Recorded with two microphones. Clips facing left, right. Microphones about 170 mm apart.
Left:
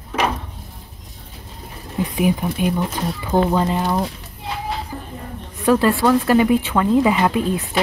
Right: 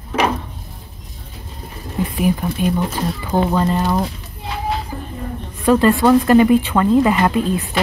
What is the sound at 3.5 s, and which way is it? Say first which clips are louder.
Speech: right 1 dB; 10° left (ahead or behind).